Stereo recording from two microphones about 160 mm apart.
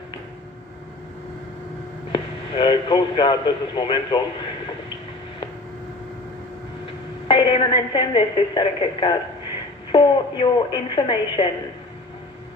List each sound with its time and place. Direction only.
2.1 s a man's voice: 30° left (ahead or behind)
7.2 s a woman's voice: 30° left (ahead or behind)